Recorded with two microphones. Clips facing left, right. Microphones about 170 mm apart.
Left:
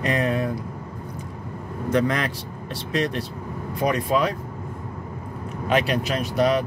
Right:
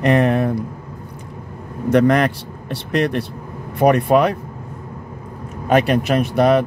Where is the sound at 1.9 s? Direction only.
65° right (ahead or behind).